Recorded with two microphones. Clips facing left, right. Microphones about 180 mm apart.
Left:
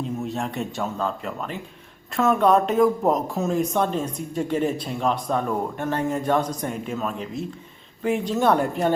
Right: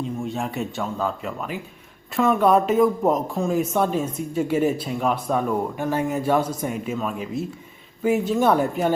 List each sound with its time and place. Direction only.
0.3 s speech: centre (ahead or behind)